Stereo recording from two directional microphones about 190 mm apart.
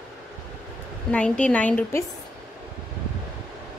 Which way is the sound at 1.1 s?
5° left (ahead or behind).